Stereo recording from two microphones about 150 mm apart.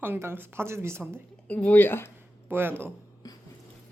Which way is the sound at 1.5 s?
10° left (ahead or behind).